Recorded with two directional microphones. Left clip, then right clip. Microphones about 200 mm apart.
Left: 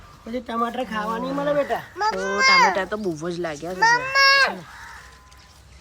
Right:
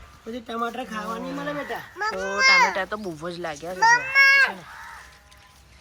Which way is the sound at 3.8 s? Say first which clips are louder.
Even; 55° left (ahead or behind).